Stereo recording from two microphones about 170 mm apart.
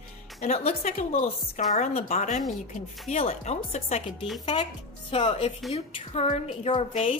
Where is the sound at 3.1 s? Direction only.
35° left (ahead or behind).